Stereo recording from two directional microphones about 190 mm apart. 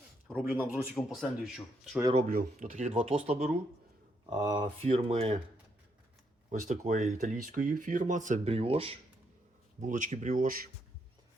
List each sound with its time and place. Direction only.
0.4 s speech: 10° right (ahead or behind)
0.9 s speech: centre (ahead or behind)
2.1 s speech: 40° right (ahead or behind)
6.5 s speech: 40° right (ahead or behind)
9.8 s speech: 40° right (ahead or behind)